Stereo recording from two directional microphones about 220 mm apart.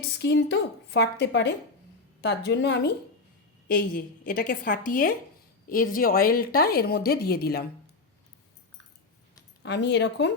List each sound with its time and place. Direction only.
0.2 s a woman's voice: 50° left (ahead or behind)
3.7 s a woman's voice: 40° left (ahead or behind)
9.6 s a woman's voice: 50° left (ahead or behind)